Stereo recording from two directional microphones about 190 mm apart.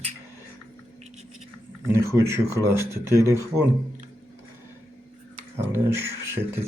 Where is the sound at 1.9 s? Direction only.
15° right (ahead or behind).